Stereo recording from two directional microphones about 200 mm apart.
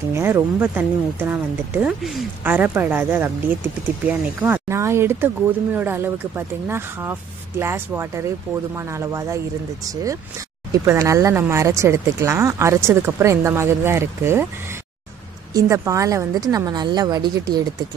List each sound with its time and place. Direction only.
0.1 s speech: 10° right (ahead or behind)
10.7 s speech: 15° right (ahead or behind)
15.5 s a woman's voice: 15° right (ahead or behind)